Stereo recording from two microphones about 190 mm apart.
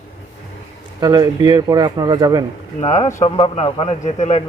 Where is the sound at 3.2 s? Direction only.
30° left (ahead or behind).